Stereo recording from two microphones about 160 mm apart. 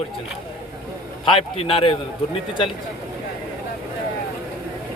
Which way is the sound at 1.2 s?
35° left (ahead or behind).